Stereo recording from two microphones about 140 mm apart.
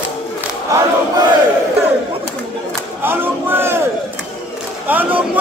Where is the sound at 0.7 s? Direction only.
25° right (ahead or behind).